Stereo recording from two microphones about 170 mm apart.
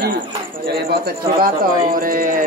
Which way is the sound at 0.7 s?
65° right (ahead or behind).